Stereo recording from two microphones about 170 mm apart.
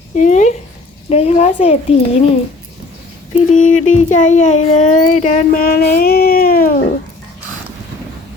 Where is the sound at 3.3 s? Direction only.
45° left (ahead or behind).